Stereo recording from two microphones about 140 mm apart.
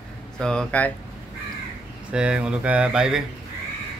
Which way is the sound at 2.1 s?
5° right (ahead or behind).